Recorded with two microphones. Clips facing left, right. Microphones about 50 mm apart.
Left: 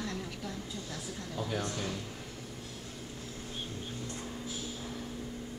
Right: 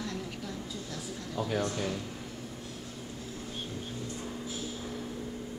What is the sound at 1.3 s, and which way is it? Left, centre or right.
Speech, centre.